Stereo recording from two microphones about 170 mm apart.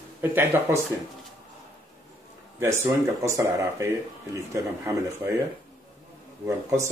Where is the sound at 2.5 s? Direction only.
15° right (ahead or behind).